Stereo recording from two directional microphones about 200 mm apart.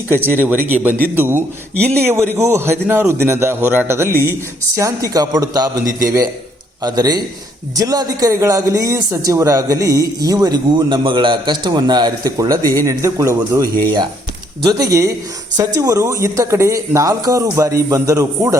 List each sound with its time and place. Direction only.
0.3 s a man's voice: 10° right (ahead or behind)